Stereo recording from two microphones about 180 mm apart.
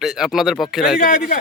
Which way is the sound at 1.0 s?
50° left (ahead or behind).